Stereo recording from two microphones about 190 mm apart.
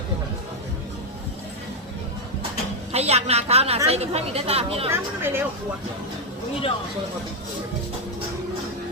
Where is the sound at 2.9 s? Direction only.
35° right (ahead or behind).